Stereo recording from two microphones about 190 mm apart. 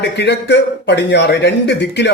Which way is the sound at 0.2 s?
65° left (ahead or behind).